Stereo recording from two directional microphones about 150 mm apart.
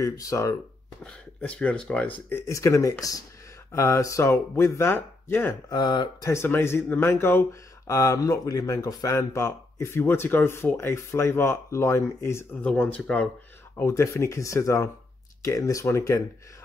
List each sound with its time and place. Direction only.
0.0 s speech: 20° left (ahead or behind)
1.0 s speech: 10° left (ahead or behind)
5.7 s speech: 30° left (ahead or behind)